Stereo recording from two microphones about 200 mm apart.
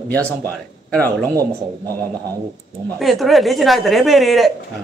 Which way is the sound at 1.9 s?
15° right (ahead or behind).